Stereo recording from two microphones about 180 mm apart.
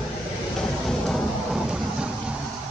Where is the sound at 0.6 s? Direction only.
Centre (ahead or behind).